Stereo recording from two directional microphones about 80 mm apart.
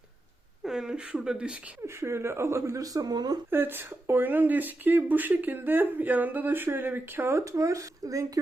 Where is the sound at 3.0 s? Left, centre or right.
Right.